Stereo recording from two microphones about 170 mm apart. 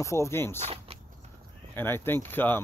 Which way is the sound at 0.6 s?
35° right (ahead or behind).